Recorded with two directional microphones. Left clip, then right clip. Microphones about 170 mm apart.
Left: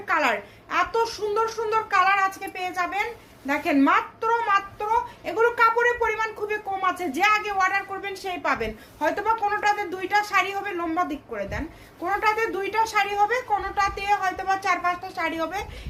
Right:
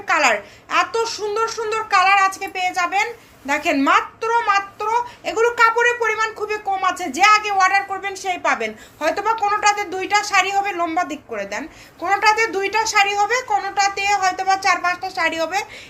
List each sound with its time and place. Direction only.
0.1 s speech: 20° right (ahead or behind)